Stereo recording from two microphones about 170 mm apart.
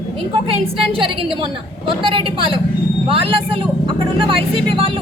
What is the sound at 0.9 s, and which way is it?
Speech, 30° right (ahead or behind).